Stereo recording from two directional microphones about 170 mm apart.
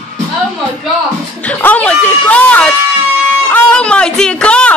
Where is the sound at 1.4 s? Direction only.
10° left (ahead or behind).